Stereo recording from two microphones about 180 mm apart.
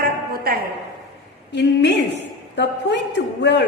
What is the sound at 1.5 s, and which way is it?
A woman's voice, 70° left (ahead or behind).